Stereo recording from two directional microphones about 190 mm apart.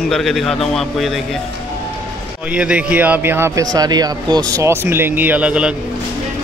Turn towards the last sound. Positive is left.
turn(degrees=-5)  # may be behind; listen again after turning